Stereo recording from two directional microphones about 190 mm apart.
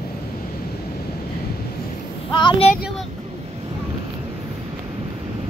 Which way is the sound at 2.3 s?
25° left (ahead or behind).